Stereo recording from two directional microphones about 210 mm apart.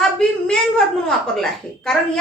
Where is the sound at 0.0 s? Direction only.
5° left (ahead or behind).